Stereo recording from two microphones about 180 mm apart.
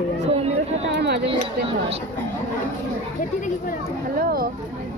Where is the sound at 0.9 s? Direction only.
70° right (ahead or behind).